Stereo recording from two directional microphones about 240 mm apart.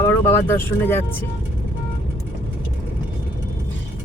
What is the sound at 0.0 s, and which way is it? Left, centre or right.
Speech, centre.